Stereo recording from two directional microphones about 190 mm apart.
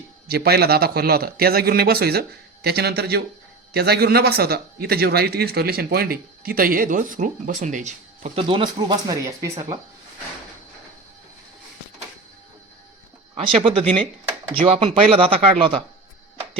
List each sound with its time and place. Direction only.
0.3 s a man's voice: 55° right (ahead or behind); by 9.5 s 20° right (ahead or behind)
13.3 s speech: 30° right (ahead or behind)